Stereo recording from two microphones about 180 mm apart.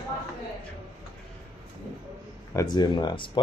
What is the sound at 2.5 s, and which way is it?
Speech, 25° left (ahead or behind).